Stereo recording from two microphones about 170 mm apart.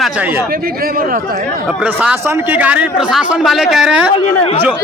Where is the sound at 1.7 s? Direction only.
5° right (ahead or behind).